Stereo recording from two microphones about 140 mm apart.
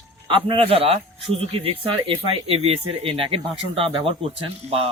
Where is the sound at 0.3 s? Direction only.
40° right (ahead or behind).